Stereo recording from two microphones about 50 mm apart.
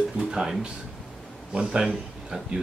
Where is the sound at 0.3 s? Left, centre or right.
Centre.